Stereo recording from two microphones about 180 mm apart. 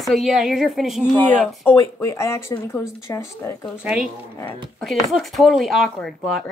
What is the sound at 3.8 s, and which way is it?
Speech, 5° right (ahead or behind).